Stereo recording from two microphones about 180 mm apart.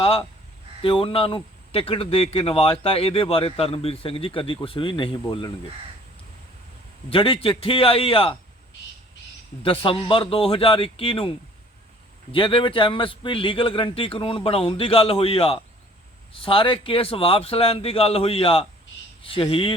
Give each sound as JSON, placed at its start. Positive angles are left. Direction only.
{"t": 0.0, "sound": "a sound", "side_deg": 30}
{"t": 0.8, "sound": "a man's voice", "side_deg": 30}
{"t": 7.1, "sound": "a man's voice", "side_deg": 30}
{"t": 9.6, "sound": "a man's voice", "side_deg": 30}